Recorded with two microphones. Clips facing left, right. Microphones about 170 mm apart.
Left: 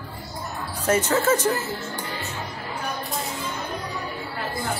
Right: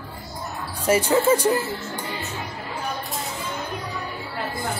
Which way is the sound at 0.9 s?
10° right (ahead or behind).